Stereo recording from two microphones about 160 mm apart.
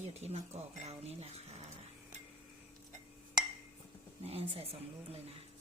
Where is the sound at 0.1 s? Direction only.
40° right (ahead or behind).